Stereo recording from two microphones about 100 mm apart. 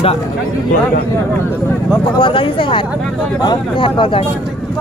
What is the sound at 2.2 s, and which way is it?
Speech, 60° left (ahead or behind).